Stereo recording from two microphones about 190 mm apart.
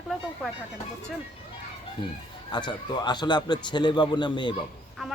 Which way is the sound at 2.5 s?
25° left (ahead or behind).